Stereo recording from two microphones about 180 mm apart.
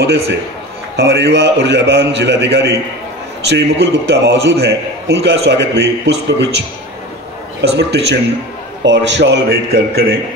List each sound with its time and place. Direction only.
0.9 s a man's voice: 70° right (ahead or behind)
7.7 s a man's voice: 70° right (ahead or behind)